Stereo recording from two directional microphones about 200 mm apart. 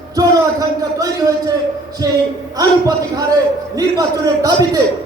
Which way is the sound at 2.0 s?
15° right (ahead or behind).